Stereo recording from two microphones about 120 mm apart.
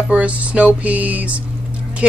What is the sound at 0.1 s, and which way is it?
Speech, 10° right (ahead or behind).